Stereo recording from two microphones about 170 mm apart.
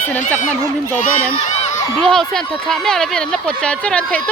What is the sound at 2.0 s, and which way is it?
Speech, 5° left (ahead or behind).